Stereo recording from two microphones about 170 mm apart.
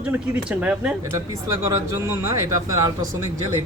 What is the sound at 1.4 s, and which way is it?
Speech, 20° right (ahead or behind).